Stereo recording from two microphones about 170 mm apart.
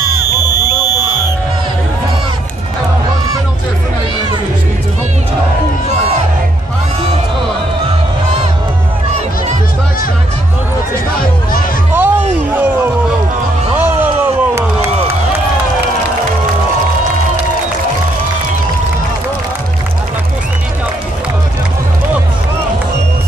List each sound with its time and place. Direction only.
0.0 s buzzer: 20° left (ahead or behind)
11.9 s music: 10° right (ahead or behind)
13.7 s a sound: 10° right (ahead or behind)